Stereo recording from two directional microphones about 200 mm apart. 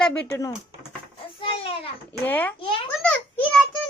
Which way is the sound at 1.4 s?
25° left (ahead or behind).